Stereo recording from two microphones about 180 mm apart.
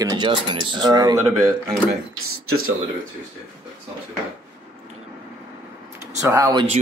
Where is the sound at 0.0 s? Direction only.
25° right (ahead or behind).